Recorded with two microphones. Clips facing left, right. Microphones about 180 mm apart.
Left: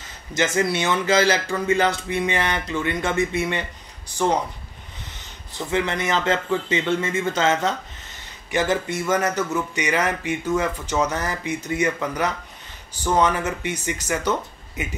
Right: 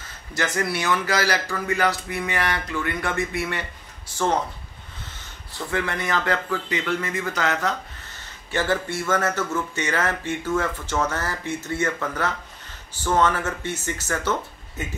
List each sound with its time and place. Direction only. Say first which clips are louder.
0.0 s speech: left 4 dB; 20° left (ahead or behind)